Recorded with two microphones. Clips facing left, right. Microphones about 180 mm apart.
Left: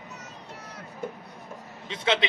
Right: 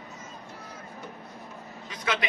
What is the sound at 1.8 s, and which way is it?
Speech, 25° left (ahead or behind).